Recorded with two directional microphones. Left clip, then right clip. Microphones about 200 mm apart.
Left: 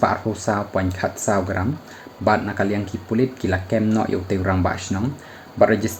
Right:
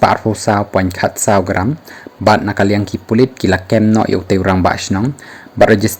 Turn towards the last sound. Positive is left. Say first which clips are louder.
# right 7 dB
turn(degrees=-45)  # may be behind; listen again after turning